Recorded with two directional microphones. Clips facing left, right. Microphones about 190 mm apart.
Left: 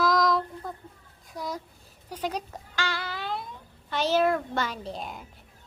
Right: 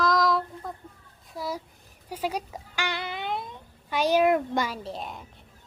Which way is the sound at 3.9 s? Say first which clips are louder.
Right 2 dB; 10° right (ahead or behind).